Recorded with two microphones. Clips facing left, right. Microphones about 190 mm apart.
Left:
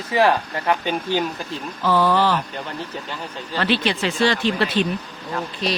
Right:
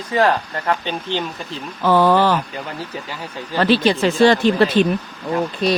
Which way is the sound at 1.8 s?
55° right (ahead or behind).